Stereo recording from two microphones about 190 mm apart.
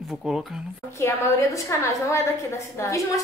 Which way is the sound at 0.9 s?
15° left (ahead or behind).